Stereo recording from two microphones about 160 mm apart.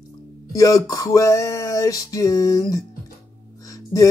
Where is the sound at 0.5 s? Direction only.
20° left (ahead or behind).